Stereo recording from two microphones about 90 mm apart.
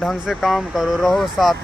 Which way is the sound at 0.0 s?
Centre (ahead or behind).